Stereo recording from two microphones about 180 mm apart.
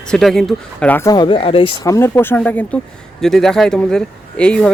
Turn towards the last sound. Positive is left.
turn(degrees=5)  # may be behind; listen again after turning